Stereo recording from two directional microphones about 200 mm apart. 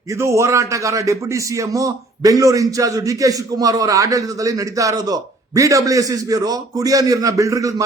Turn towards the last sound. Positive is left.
turn(degrees=-15)  # may be behind; listen again after turning